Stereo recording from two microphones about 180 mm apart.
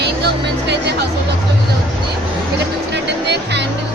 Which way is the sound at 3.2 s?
70° right (ahead or behind).